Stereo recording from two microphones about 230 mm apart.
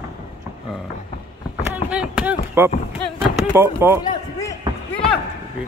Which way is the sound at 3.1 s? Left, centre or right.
Centre.